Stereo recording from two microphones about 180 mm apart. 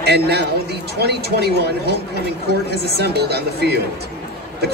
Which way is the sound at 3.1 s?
65° right (ahead or behind).